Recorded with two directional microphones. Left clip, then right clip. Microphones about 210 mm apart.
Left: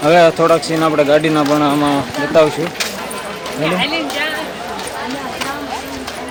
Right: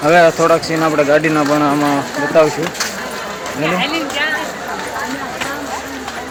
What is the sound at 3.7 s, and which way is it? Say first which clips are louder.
Speech: even; 55° left (ahead or behind).